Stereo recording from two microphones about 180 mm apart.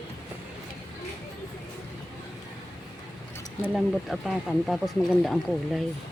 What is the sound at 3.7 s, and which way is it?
Speech, centre (ahead or behind).